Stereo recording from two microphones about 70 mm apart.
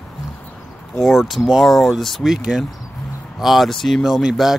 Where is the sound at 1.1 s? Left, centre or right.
Centre.